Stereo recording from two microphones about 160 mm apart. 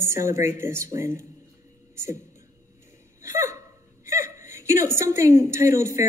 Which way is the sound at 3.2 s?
20° right (ahead or behind).